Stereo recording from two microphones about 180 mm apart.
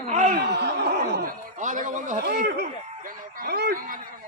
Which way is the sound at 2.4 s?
65° right (ahead or behind).